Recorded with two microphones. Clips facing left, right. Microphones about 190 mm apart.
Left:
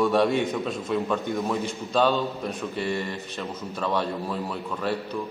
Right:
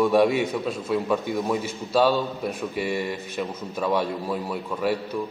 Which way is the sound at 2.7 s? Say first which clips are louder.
Right 2 dB; 15° right (ahead or behind).